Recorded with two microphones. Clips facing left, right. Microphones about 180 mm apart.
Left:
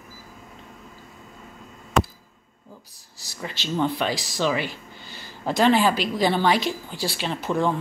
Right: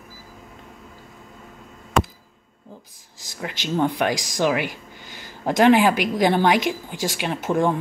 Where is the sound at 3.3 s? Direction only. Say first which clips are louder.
Right 2 dB; 15° right (ahead or behind).